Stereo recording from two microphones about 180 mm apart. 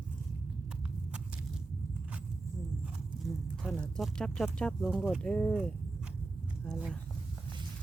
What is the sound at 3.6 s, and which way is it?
Speech, centre (ahead or behind).